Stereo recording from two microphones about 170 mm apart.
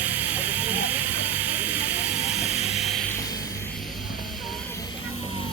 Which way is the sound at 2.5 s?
40° left (ahead or behind).